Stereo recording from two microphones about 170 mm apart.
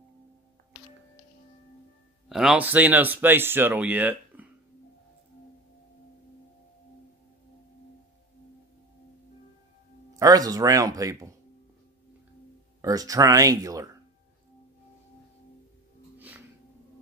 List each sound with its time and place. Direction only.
2.2 s speech: centre (ahead or behind)
10.1 s speech: 20° right (ahead or behind)
12.8 s speech: 20° right (ahead or behind)
16.2 s music: 10° right (ahead or behind)